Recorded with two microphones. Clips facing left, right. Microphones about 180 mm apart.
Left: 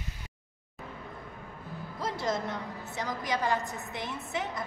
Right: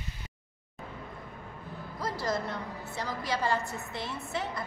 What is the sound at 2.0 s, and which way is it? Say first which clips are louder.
A man's voice: even; 20° left (ahead or behind).